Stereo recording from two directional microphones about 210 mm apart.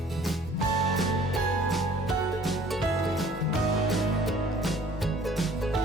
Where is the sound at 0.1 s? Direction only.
Centre (ahead or behind).